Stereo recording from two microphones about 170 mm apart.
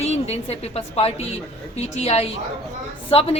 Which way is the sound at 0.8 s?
35° left (ahead or behind).